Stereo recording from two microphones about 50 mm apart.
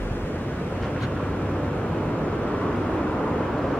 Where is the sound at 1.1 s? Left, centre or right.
Centre.